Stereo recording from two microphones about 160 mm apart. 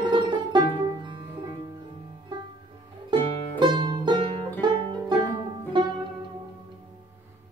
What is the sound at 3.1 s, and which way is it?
Music, 30° right (ahead or behind).